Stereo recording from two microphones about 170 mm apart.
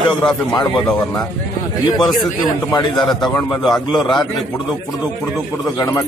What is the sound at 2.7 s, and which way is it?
Speech, 25° left (ahead or behind).